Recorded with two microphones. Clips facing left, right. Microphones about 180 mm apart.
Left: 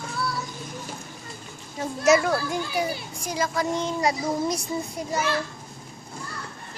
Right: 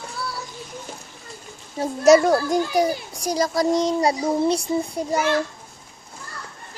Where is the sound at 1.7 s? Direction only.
35° right (ahead or behind).